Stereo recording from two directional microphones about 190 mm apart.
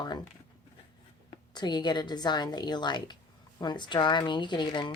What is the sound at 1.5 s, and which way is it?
A woman's voice, 20° left (ahead or behind).